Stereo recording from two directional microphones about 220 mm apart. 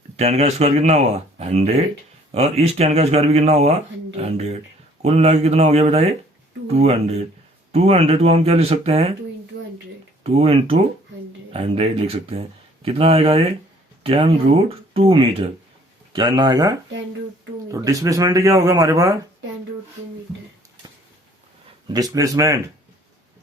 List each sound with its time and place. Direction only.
0.2 s speech: 30° right (ahead or behind)
10.2 s speech: 25° right (ahead or behind)
21.8 s speech: 15° right (ahead or behind)